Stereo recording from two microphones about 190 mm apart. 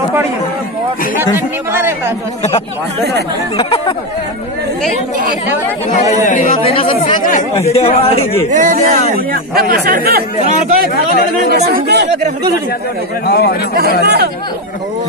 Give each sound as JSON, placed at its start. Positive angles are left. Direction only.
{"t": 1.3, "sound": "speech", "side_deg": -10}
{"t": 3.5, "sound": "speech", "side_deg": 25}
{"t": 5.9, "sound": "speech", "side_deg": 40}
{"t": 6.6, "sound": "speech", "side_deg": 30}
{"t": 8.5, "sound": "speech", "side_deg": -40}
{"t": 11.1, "sound": "speech", "side_deg": 55}
{"t": 11.5, "sound": "speech", "side_deg": -60}
{"t": 13.3, "sound": "a man's voice", "side_deg": 55}
{"t": 14.0, "sound": "speech", "side_deg": -60}